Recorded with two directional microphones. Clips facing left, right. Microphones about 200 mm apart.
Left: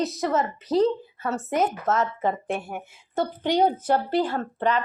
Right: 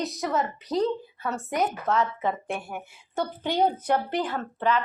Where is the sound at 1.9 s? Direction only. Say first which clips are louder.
Left 1 dB; 45° left (ahead or behind).